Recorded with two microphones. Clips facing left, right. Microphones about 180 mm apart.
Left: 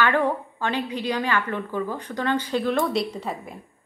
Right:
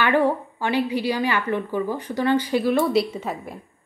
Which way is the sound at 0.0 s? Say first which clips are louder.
Right 2 dB; 10° right (ahead or behind).